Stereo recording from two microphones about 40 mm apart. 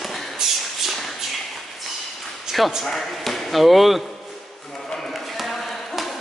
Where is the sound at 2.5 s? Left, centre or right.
Centre.